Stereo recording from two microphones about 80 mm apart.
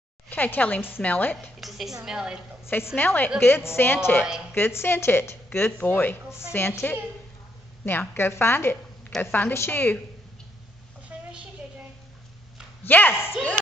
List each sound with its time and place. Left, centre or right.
0.3 s a woman's voice: left
1.6 s a woman's voice: centre
2.6 s a woman's voice: left
5.7 s a woman's voice: left
11.1 s a sound: right
12.8 s a woman's voice: left